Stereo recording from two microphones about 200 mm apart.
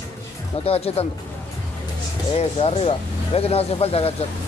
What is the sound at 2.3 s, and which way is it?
Speech, 30° left (ahead or behind).